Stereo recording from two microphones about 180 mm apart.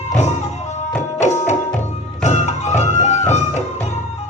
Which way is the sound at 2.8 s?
40° left (ahead or behind).